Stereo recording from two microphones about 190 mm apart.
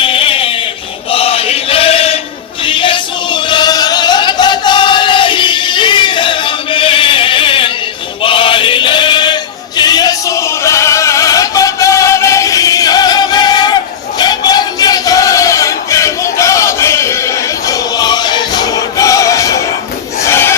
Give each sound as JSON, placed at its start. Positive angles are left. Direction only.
{"t": 0.0, "sound": "a sound", "side_deg": 30}
{"t": 1.1, "sound": "chant", "side_deg": 30}
{"t": 8.2, "sound": "male singing", "side_deg": 25}
{"t": 14.2, "sound": "battle cry", "side_deg": 20}
{"t": 20.2, "sound": "crowd", "side_deg": 15}